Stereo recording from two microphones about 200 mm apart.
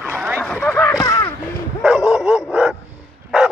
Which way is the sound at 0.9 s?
15° left (ahead or behind).